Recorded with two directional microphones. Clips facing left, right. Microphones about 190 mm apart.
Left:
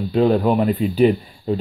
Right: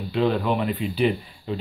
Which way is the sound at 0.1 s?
45° left (ahead or behind).